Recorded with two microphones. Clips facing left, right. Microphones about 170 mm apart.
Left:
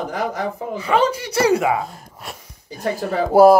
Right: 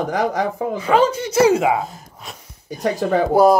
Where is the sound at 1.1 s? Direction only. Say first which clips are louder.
Right 3 dB; 25° right (ahead or behind).